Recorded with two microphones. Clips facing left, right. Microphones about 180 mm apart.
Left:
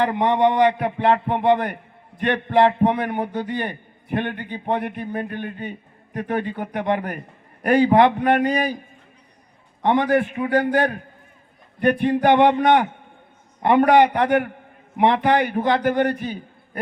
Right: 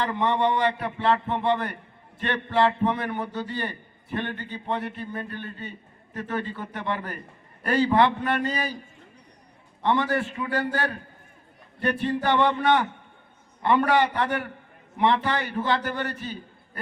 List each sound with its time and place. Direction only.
0.0 s a man's voice: 55° left (ahead or behind)
9.8 s a man's voice: 50° left (ahead or behind)